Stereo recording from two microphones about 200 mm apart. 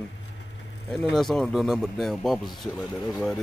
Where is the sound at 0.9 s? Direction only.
5° left (ahead or behind).